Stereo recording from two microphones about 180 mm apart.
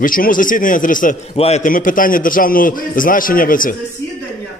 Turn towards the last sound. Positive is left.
turn(degrees=50)  # may be behind; listen again after turning